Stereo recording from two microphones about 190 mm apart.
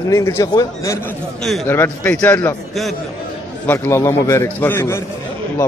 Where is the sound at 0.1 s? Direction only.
15° left (ahead or behind).